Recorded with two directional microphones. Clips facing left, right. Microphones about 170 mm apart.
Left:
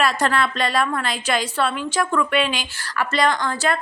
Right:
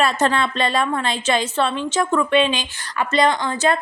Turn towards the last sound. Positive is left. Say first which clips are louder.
# right 2 dB
turn(degrees=-20)  # may be behind; listen again after turning